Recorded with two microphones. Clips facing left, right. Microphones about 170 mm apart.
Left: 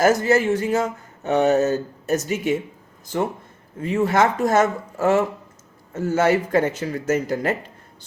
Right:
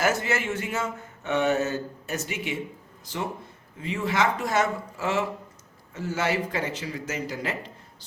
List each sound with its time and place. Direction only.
0.0 s speech: 40° left (ahead or behind)
3.8 s speech: 45° left (ahead or behind)